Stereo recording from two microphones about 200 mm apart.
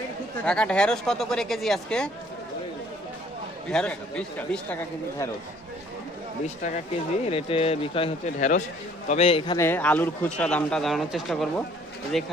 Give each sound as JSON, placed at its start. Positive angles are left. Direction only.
{"t": 0.4, "sound": "speech", "side_deg": 5}
{"t": 3.7, "sound": "speech", "side_deg": 5}
{"t": 7.3, "sound": "speech", "side_deg": 25}
{"t": 9.6, "sound": "speech", "side_deg": 10}